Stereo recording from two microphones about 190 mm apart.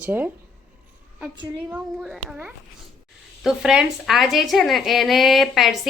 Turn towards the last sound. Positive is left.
turn(degrees=0)  # may be behind; listen again after turning